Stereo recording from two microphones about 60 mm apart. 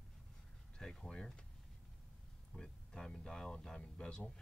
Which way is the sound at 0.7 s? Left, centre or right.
Centre.